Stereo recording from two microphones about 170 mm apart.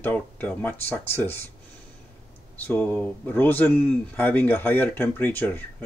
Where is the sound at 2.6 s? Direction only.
10° left (ahead or behind).